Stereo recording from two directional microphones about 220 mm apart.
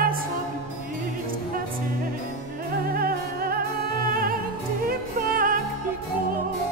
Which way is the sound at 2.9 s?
45° right (ahead or behind).